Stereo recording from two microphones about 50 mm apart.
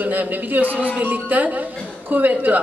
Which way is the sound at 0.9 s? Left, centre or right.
Right.